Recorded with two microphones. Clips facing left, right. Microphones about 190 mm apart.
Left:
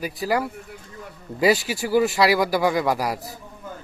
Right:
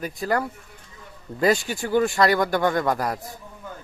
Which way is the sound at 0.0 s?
5° left (ahead or behind).